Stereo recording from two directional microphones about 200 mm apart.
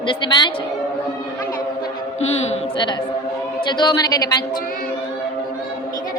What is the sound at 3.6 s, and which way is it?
Speech, 20° left (ahead or behind).